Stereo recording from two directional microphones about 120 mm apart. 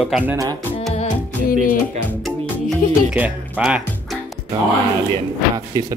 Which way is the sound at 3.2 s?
10° right (ahead or behind).